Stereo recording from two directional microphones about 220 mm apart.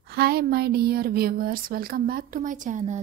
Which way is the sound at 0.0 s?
45° right (ahead or behind).